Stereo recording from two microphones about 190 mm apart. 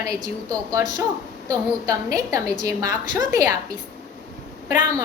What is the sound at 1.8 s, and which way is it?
A woman's voice, 15° right (ahead or behind).